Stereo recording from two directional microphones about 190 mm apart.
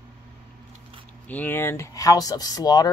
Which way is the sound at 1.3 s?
10° left (ahead or behind).